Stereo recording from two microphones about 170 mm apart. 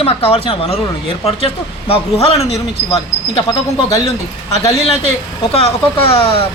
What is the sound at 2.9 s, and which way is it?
Speech, 20° left (ahead or behind).